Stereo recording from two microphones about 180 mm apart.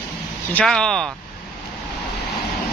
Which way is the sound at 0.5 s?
5° left (ahead or behind).